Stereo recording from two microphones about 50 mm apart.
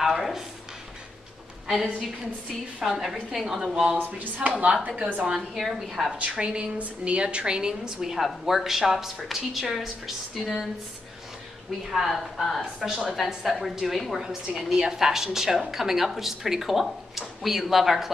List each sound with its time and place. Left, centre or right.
0.0 s speech: centre
1.7 s a woman's voice: centre
4.0 s speech: right
5.3 s speech: centre
6.3 s a woman's voice: right; by 10.5 s centre
11.9 s a woman's voice: centre